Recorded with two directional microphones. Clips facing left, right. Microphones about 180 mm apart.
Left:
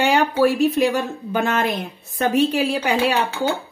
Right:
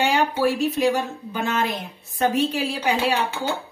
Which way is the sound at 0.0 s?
60° left (ahead or behind).